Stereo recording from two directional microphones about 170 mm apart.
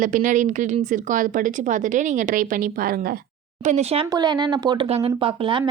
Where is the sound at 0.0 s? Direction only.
50° right (ahead or behind).